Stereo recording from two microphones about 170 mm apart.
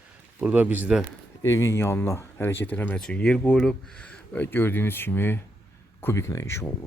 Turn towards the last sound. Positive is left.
turn(degrees=15)  # may be behind; listen again after turning